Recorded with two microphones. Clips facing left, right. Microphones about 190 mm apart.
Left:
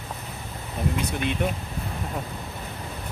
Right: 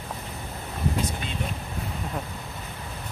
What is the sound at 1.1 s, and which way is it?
Speech, 60° left (ahead or behind).